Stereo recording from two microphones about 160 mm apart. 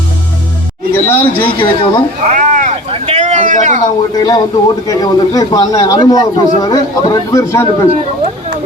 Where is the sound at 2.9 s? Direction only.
40° right (ahead or behind).